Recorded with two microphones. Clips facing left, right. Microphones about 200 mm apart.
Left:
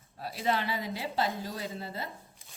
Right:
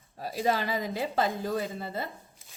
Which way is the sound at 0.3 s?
40° right (ahead or behind).